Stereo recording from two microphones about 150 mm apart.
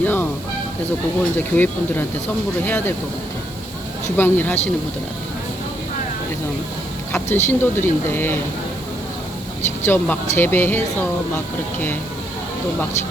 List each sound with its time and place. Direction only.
0.0 s fowl: 10° left (ahead or behind)
1.4 s speech: 10° left (ahead or behind)
4.2 s speech: 15° left (ahead or behind)
7.1 s speech: 15° left (ahead or behind)
9.8 s speech: 15° left (ahead or behind)